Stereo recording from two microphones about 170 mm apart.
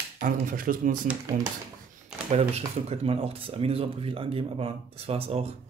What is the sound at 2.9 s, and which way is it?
Speech, 35° right (ahead or behind).